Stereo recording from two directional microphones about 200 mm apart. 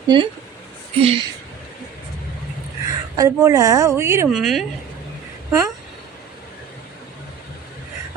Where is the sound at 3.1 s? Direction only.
15° right (ahead or behind).